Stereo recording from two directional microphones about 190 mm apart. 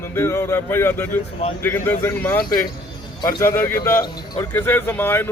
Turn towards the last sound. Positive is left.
turn(degrees=10)  # may be behind; listen again after turning